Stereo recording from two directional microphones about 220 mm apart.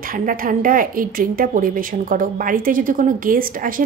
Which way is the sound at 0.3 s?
40° right (ahead or behind).